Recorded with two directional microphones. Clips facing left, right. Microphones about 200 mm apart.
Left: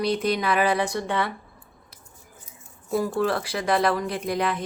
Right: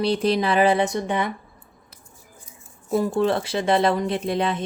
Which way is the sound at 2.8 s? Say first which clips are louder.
Right 3 dB; 25° right (ahead or behind).